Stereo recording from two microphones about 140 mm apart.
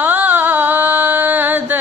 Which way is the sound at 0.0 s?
15° right (ahead or behind).